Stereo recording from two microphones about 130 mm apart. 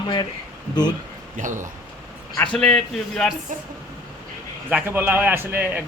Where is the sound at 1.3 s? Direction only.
75° right (ahead or behind).